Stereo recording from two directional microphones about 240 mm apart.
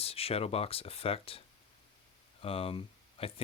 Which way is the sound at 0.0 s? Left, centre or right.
Left.